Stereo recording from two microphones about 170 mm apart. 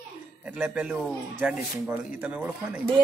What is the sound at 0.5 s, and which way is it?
Speech, 5° right (ahead or behind).